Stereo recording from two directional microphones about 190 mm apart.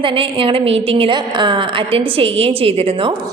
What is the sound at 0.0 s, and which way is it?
A woman's voice, 25° right (ahead or behind).